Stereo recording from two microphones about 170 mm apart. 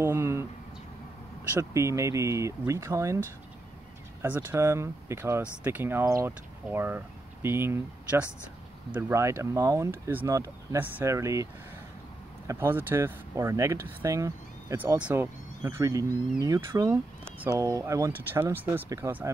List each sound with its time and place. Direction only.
0.0 s a sound: 15° right (ahead or behind)
1.5 s speech: 15° right (ahead or behind)
12.4 s speech: 15° right (ahead or behind)